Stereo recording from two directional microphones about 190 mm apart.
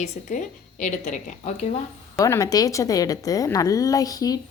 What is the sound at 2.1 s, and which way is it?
Speech, 15° left (ahead or behind).